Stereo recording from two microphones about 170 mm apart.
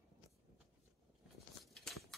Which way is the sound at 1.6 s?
Centre (ahead or behind).